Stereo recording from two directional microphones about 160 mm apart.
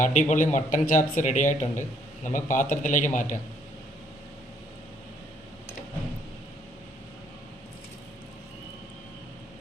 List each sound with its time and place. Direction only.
0.0 s speech: 50° left (ahead or behind)